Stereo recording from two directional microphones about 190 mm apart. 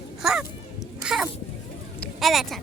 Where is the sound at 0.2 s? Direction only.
5° right (ahead or behind).